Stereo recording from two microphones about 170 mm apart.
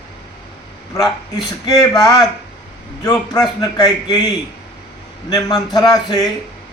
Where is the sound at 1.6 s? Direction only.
20° left (ahead or behind).